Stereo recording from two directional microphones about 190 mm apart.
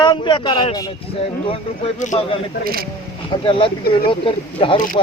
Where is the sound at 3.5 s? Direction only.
25° left (ahead or behind).